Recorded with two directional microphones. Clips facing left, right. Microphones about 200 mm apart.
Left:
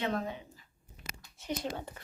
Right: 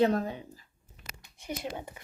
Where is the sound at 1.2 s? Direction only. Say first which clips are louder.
Left 1 dB; 15° right (ahead or behind).